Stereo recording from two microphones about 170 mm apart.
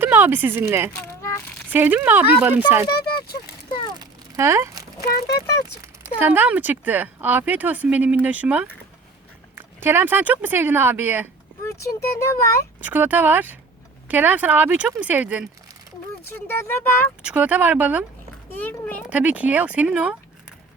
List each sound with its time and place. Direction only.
0.0 s a sound: 10° right (ahead or behind)
0.7 s speech: 15° right (ahead or behind)
1.0 s a sound: 15° left (ahead or behind)
1.7 s speech: 10° right (ahead or behind)
3.9 s a sound: 15° right (ahead or behind)
5.0 s speech: 65° left (ahead or behind)
6.1 s speech: 10° right (ahead or behind)
11.6 s speech: 15° left (ahead or behind)
12.8 s speech: 10° right (ahead or behind)
16.5 s speech: 15° left (ahead or behind)
17.2 s speech: 10° right (ahead or behind)
18.5 s speech: 10° left (ahead or behind)
19.0 s speech: 10° right (ahead or behind)